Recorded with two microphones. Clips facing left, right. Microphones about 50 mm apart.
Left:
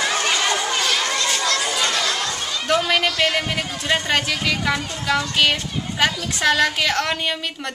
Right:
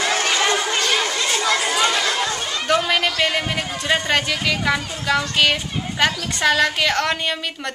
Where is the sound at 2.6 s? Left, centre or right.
Centre.